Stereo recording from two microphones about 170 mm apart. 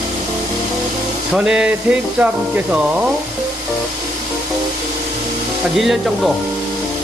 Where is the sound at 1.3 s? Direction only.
5° right (ahead or behind).